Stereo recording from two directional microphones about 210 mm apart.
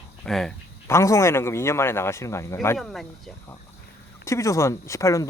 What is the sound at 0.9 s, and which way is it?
A man's voice, 15° left (ahead or behind).